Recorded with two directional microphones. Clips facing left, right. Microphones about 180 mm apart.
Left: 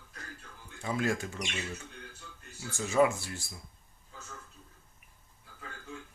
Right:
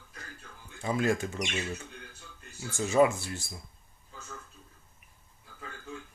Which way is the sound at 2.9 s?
25° right (ahead or behind).